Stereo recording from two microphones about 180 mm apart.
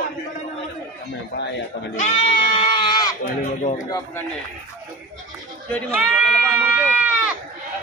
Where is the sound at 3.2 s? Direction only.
40° left (ahead or behind).